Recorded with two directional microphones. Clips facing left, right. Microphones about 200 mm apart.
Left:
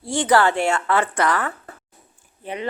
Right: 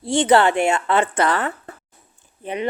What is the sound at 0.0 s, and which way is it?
A woman's voice, 25° right (ahead or behind).